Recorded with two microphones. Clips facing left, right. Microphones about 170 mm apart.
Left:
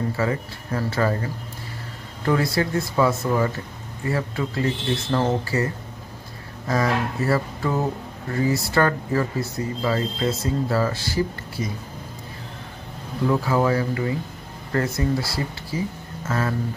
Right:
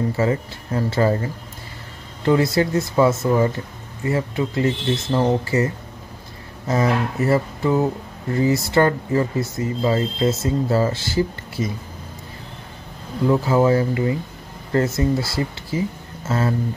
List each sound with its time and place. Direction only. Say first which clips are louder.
0.2 s speech: right 4 dB; 25° right (ahead or behind)
2.2 s speech: right 4 dB; 25° right (ahead or behind)
6.7 s speech: right 3 dB; 20° right (ahead or behind)
13.3 s speech: right 4 dB; 20° right (ahead or behind)